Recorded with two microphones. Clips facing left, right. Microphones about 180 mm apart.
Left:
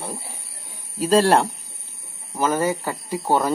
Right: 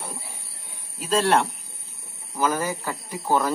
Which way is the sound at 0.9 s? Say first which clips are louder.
Left 5 dB; 35° left (ahead or behind).